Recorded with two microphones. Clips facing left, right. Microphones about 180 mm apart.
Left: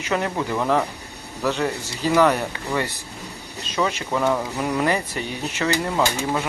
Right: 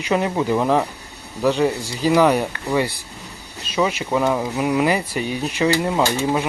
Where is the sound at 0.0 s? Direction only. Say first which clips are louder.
Right 4 dB; 20° right (ahead or behind).